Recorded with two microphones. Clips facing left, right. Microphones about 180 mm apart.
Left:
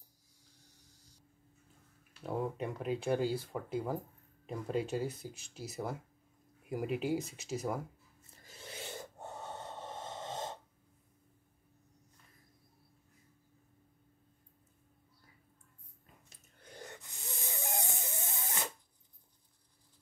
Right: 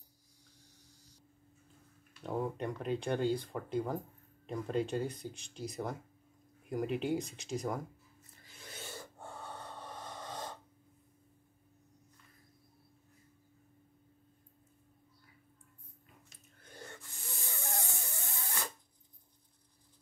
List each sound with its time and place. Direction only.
2.2 s speech: 5° left (ahead or behind)
8.8 s snort: 20° left (ahead or behind)
16.7 s a sound: 20° left (ahead or behind)